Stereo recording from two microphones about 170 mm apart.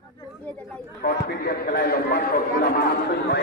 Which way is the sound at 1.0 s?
65° left (ahead or behind).